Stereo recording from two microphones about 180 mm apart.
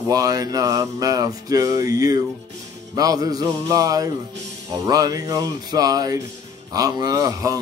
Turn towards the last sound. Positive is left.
turn(degrees=-20)  # may be behind; listen again after turning